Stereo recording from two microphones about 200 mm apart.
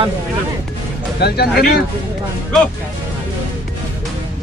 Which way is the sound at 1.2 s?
50° left (ahead or behind).